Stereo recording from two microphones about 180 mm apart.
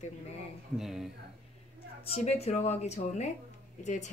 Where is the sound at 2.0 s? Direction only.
35° left (ahead or behind).